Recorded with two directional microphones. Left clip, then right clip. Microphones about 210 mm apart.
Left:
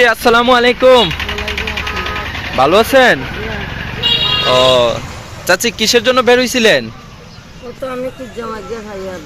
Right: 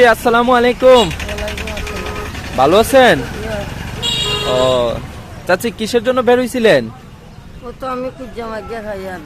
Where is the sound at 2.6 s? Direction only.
10° right (ahead or behind).